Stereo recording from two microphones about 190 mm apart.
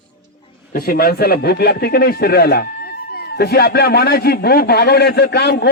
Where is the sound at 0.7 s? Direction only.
50° left (ahead or behind).